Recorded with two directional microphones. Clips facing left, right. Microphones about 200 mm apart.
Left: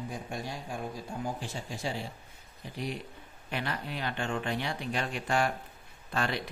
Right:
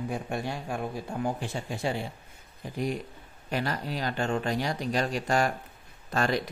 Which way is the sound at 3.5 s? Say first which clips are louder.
Right 5 dB; 40° right (ahead or behind).